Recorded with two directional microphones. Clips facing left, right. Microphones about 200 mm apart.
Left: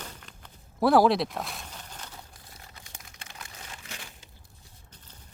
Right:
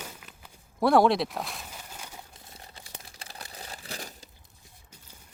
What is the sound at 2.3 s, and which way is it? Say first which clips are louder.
Crumpling: right 2 dB; 25° right (ahead or behind).